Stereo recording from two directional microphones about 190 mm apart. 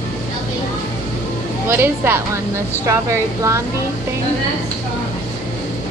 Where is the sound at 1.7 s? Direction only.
10° right (ahead or behind).